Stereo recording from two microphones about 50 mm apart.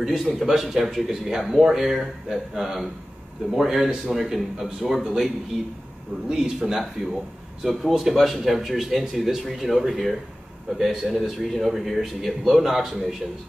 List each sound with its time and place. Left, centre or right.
0.0 s a man's voice: centre